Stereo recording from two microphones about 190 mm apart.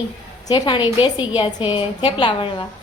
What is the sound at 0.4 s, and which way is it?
Speech, 20° left (ahead or behind).